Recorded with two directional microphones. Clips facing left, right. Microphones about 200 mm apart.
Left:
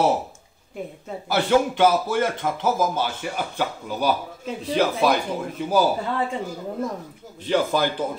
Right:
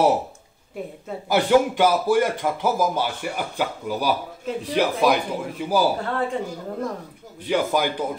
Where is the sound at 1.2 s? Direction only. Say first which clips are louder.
Right 2 dB; 15° right (ahead or behind).